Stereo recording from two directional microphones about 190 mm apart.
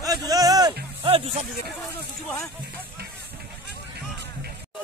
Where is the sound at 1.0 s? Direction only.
30° right (ahead or behind).